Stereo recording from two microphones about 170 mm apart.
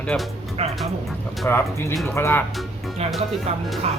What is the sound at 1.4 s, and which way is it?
Speech, 15° left (ahead or behind).